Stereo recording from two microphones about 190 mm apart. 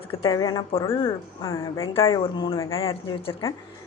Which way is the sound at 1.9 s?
25° left (ahead or behind).